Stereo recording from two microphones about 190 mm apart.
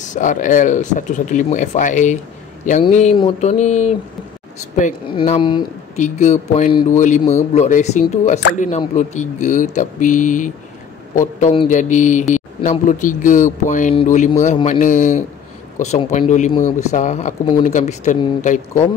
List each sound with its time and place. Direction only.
0.0 s a man's voice: 40° left (ahead or behind)
5.1 s a man's voice: 30° left (ahead or behind)